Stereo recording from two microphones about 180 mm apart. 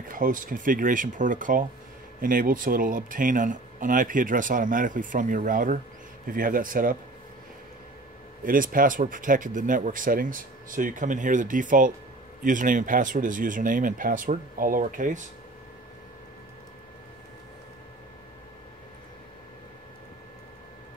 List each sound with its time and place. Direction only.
0.1 s speech: 50° right (ahead or behind)
8.5 s speech: 50° right (ahead or behind)